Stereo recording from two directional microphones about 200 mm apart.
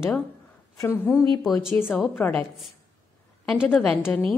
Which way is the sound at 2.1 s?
10° left (ahead or behind).